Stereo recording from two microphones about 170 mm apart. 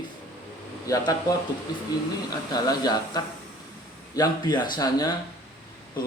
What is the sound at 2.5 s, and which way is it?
Speech, 25° left (ahead or behind).